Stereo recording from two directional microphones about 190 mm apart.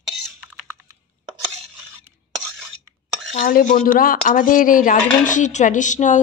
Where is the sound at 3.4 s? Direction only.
45° left (ahead or behind).